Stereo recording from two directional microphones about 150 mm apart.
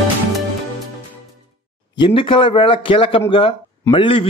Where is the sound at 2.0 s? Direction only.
35° left (ahead or behind).